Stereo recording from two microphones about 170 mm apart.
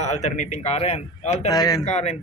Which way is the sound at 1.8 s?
40° left (ahead or behind).